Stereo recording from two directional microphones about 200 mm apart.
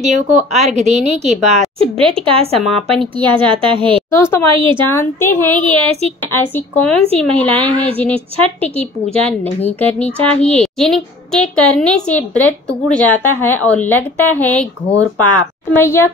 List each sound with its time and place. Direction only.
0.0 s a woman's voice: 35° right (ahead or behind)
2.6 s a woman's voice: centre (ahead or behind)
3.3 s a woman's voice: 25° right (ahead or behind)
4.1 s a woman's voice: 15° left (ahead or behind)
4.5 s a woman's voice: 25° right (ahead or behind)
4.8 s a woman's voice: 10° left (ahead or behind)
5.7 s a woman's voice: 30° right (ahead or behind)
6.3 s a woman's voice: 10° left (ahead or behind)
15.7 s a woman's voice: 10° left (ahead or behind)